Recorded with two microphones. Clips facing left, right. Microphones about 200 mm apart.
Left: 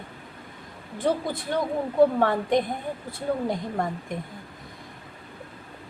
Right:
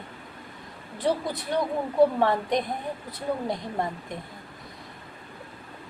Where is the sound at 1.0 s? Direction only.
50° left (ahead or behind).